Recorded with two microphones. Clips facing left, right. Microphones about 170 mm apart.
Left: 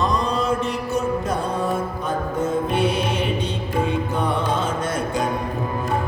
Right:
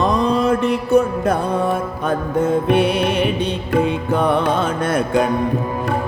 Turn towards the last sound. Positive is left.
turn(degrees=-65)  # may be behind; listen again after turning